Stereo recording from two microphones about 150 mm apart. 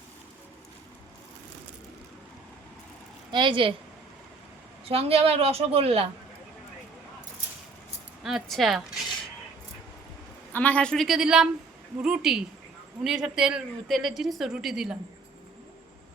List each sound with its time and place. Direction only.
3.3 s a woman's voice: 35° right (ahead or behind)
4.9 s a woman's voice: 40° right (ahead or behind)
8.2 s a woman's voice: centre (ahead or behind)
10.5 s a woman's voice: 10° left (ahead or behind)